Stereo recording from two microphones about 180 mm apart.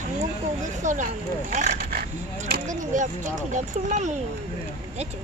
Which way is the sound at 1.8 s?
55° right (ahead or behind).